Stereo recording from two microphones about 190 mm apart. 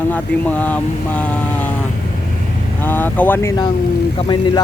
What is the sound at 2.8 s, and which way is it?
Speech, 10° left (ahead or behind).